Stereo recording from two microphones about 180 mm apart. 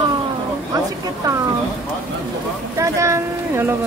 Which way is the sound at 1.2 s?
20° right (ahead or behind).